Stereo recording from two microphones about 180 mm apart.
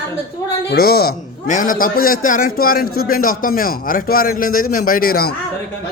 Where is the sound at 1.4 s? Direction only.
45° left (ahead or behind).